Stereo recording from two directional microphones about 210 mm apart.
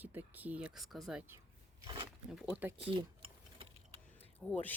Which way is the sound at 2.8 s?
25° right (ahead or behind).